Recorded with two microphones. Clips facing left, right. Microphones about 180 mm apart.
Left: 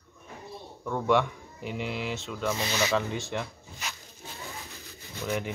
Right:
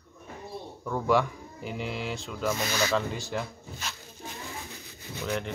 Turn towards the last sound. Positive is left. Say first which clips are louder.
# even
turn(degrees=5)  # may be behind; listen again after turning